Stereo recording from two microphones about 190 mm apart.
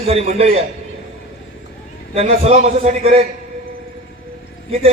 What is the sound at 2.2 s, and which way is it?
A man's voice, 35° right (ahead or behind).